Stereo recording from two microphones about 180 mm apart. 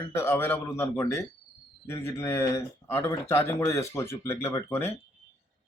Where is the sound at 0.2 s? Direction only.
15° left (ahead or behind).